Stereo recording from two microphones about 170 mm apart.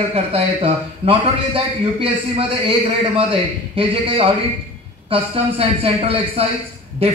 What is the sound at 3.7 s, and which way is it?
A man's voice, 35° right (ahead or behind).